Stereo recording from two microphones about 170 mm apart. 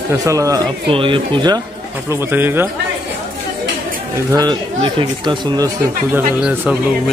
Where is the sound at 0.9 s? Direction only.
30° right (ahead or behind).